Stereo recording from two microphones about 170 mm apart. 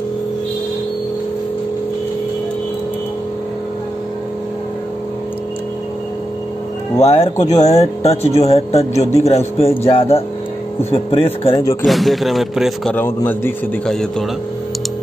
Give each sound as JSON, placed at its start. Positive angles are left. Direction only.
{"t": 7.0, "sound": "speech", "side_deg": 40}
{"t": 11.5, "sound": "speech", "side_deg": 20}
{"t": 11.8, "sound": "speech", "side_deg": 0}
{"t": 12.9, "sound": "a man's voice", "side_deg": 10}